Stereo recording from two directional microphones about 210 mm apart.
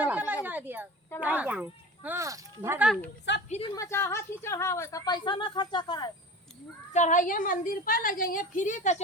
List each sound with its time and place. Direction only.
0.0 s a sound: 5° right (ahead or behind)
1.2 s speech: 10° right (ahead or behind)
3.3 s a woman's voice: 55° left (ahead or behind)
3.8 s a woman's voice: 10° left (ahead or behind)
6.9 s a woman's voice: 35° left (ahead or behind)